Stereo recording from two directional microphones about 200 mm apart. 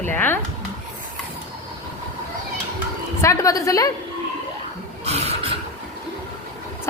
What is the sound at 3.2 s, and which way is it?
Speech, 15° left (ahead or behind).